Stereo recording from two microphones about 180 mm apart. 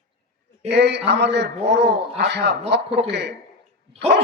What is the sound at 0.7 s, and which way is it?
A man's voice, 70° right (ahead or behind).